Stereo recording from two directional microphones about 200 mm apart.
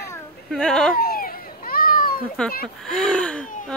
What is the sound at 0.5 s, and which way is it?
Speech, centre (ahead or behind).